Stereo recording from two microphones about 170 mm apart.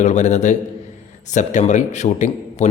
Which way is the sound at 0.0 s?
45° left (ahead or behind).